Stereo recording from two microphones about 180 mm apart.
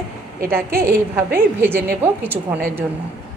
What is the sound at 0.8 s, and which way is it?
A woman's voice, 15° right (ahead or behind).